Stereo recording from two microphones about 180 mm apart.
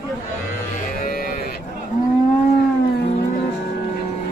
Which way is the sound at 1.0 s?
55° left (ahead or behind).